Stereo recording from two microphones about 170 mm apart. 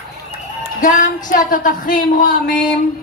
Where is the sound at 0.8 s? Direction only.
50° left (ahead or behind).